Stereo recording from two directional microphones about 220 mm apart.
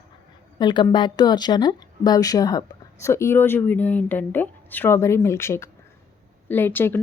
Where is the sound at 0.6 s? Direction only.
20° left (ahead or behind).